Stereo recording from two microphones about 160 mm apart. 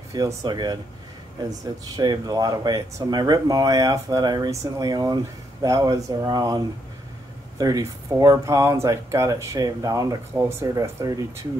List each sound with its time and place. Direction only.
0.1 s speech: 20° right (ahead or behind)
2.0 s speech: 25° right (ahead or behind)